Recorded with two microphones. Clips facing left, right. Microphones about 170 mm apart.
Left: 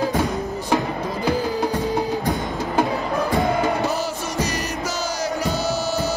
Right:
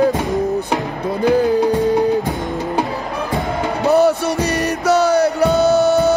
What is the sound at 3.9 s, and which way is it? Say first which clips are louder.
Music: right 12 dB; 65° right (ahead or behind).